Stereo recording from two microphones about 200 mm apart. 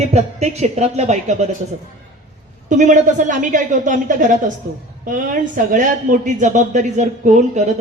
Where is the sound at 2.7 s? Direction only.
40° right (ahead or behind).